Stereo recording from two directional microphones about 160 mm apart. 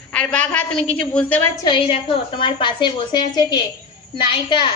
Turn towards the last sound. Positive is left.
turn(degrees=30)  # may be behind; listen again after turning